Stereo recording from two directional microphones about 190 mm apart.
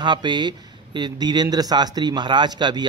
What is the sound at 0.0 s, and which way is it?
Speech, 25° right (ahead or behind).